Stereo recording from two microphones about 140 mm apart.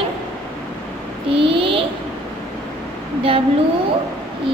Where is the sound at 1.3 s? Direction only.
40° right (ahead or behind).